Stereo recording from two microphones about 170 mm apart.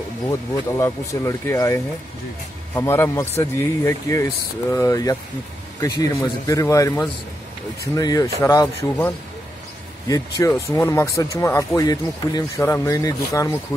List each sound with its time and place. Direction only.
0.3 s speech: 15° left (ahead or behind)